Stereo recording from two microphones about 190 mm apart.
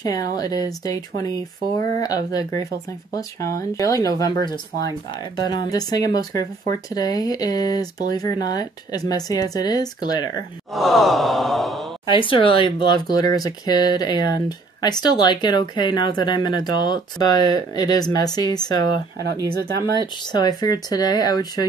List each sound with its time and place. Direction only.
0.0 s speech: 20° left (ahead or behind)
10.7 s sigh: centre (ahead or behind)
12.1 s speech: 25° left (ahead or behind)
20.3 s speech: 20° left (ahead or behind)